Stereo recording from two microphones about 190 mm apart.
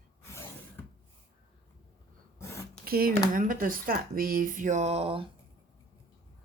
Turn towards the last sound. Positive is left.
turn(degrees=-30)  # may be behind; listen again after turning